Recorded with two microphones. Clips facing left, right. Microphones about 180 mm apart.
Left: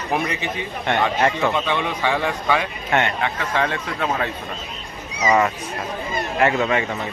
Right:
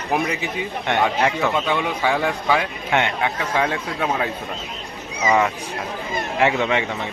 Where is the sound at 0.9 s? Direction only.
5° right (ahead or behind).